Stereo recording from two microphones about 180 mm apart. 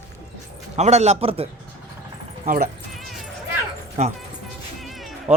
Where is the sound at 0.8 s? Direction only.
40° right (ahead or behind).